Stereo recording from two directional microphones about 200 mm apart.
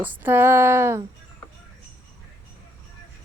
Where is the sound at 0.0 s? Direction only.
10° right (ahead or behind).